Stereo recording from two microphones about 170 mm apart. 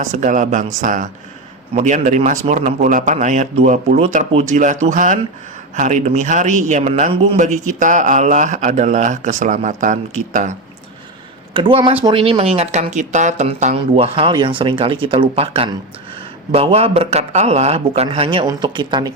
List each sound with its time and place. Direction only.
0.0 s a man's voice: 45° right (ahead or behind)
7.3 s a man's voice: 45° right (ahead or behind)
11.5 s a man's voice: 30° right (ahead or behind)